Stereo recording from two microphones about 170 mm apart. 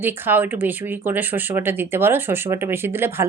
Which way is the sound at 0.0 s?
10° right (ahead or behind).